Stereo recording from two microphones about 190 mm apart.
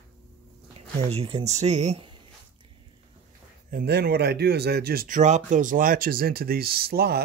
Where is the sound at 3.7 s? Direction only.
55° right (ahead or behind).